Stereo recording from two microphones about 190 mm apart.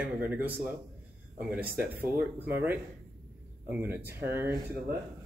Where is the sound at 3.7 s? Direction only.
10° right (ahead or behind).